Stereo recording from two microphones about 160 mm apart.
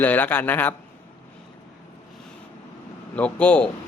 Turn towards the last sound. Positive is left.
turn(degrees=10)  # may be behind; listen again after turning